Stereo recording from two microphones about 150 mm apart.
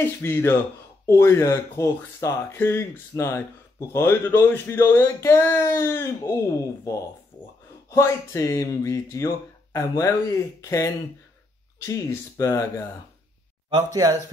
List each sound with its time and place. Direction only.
0.0 s speech: 15° left (ahead or behind)